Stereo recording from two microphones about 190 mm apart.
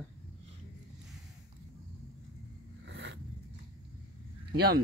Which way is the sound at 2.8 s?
75° right (ahead or behind).